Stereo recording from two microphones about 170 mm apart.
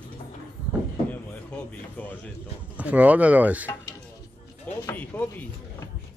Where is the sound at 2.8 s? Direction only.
10° right (ahead or behind).